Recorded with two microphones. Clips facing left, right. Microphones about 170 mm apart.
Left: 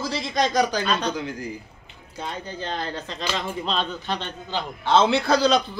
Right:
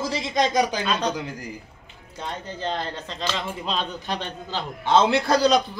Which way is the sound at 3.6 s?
10° right (ahead or behind).